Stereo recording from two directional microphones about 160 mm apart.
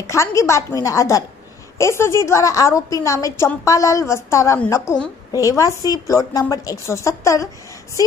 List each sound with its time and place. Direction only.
0.0 s a woman's voice: 20° left (ahead or behind)